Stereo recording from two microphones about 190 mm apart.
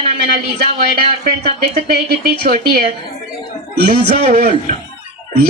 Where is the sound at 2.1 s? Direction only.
50° right (ahead or behind).